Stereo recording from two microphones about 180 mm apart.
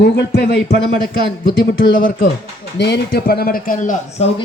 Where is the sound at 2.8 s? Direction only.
70° left (ahead or behind); by 4.3 s 40° left (ahead or behind).